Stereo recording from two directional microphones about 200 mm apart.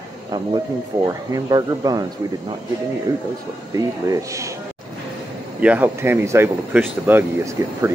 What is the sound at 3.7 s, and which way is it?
Speech, 15° right (ahead or behind).